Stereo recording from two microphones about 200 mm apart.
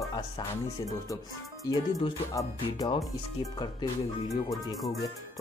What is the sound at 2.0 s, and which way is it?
Speech, 15° left (ahead or behind).